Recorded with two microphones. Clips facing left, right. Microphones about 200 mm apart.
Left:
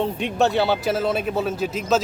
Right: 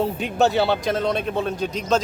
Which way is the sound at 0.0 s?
Centre (ahead or behind).